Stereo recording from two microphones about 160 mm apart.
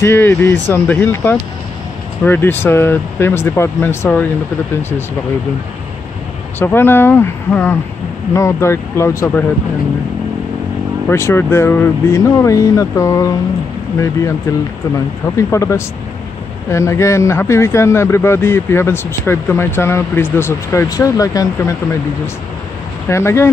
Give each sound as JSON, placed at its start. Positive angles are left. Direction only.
{"t": 0.0, "sound": "speech", "side_deg": 15}
{"t": 6.6, "sound": "speech", "side_deg": 15}
{"t": 11.1, "sound": "speech", "side_deg": 15}
{"t": 15.3, "sound": "speech", "side_deg": 20}
{"t": 23.0, "sound": "speech", "side_deg": 15}